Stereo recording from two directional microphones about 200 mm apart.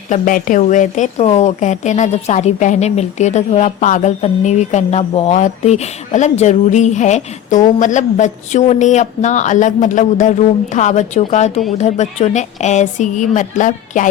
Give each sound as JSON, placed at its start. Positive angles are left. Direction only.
{"t": 0.1, "sound": "a woman's voice", "side_deg": 40}